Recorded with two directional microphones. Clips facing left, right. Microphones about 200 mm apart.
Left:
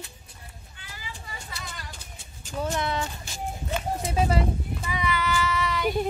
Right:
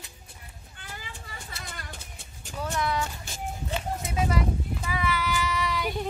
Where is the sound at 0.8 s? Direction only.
55° right (ahead or behind).